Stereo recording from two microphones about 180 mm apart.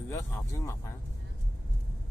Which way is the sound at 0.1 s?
15° left (ahead or behind).